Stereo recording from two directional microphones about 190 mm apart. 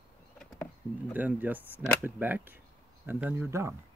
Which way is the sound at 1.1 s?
10° right (ahead or behind).